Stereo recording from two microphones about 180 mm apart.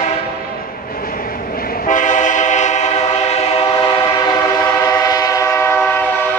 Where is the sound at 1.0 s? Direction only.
55° left (ahead or behind).